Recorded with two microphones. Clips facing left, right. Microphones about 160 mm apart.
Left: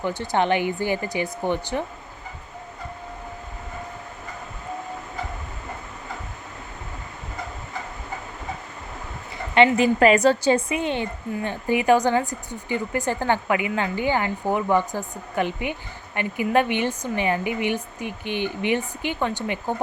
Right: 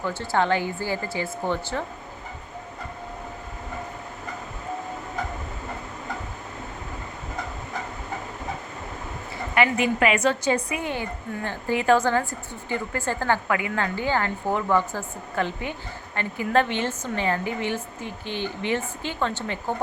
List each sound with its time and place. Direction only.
0.0 s a woman's voice: 20° left (ahead or behind)
9.6 s a woman's voice: 35° left (ahead or behind); by 19.7 s 15° left (ahead or behind)